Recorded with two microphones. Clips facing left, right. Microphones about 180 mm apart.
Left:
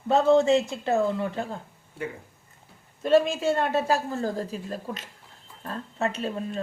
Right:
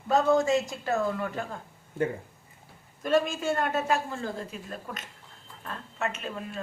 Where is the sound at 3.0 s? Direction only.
30° left (ahead or behind).